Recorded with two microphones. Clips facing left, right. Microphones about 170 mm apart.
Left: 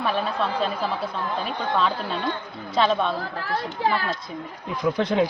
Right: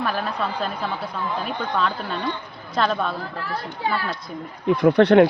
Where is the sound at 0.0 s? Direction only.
Centre (ahead or behind).